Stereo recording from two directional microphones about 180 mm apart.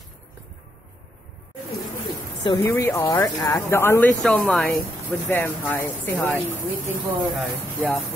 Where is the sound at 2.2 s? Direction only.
15° left (ahead or behind); by 8.0 s centre (ahead or behind).